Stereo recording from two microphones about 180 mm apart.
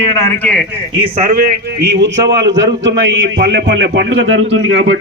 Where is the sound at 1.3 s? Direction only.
65° right (ahead or behind).